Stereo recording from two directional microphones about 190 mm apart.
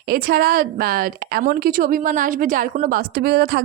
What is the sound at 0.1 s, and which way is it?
A woman's voice, 50° right (ahead or behind).